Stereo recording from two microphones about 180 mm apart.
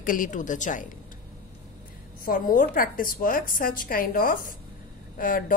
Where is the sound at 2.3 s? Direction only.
50° left (ahead or behind).